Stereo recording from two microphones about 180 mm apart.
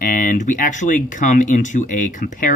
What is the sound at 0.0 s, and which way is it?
Speech, 45° left (ahead or behind).